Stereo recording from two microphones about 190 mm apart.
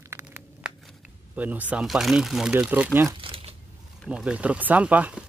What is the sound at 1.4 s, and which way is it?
Speech, 10° right (ahead or behind).